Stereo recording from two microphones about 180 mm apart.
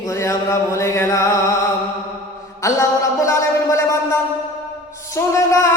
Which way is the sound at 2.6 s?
15° left (ahead or behind).